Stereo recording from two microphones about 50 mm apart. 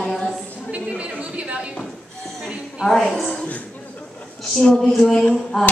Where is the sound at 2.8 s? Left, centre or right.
Centre.